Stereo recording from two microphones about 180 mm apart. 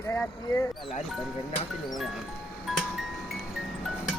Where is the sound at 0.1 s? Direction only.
10° left (ahead or behind).